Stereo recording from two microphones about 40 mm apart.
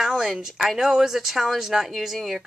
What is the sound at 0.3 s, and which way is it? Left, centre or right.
Speech, centre.